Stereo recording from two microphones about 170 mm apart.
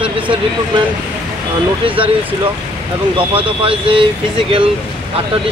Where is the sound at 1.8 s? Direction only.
30° right (ahead or behind).